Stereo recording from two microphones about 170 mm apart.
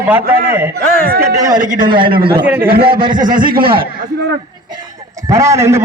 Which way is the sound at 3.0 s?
25° right (ahead or behind).